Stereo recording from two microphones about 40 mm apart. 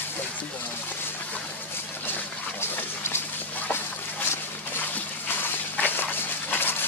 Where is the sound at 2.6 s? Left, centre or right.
Left.